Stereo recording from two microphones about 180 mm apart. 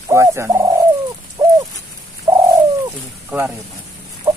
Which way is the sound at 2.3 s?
20° right (ahead or behind).